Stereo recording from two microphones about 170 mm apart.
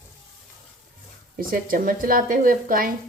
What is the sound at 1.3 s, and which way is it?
A woman's voice, 55° right (ahead or behind).